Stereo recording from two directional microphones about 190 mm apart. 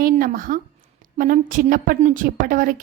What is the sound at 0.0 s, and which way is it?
A woman's voice, 50° right (ahead or behind).